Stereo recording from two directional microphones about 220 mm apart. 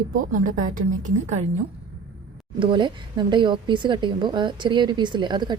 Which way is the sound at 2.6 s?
20° right (ahead or behind).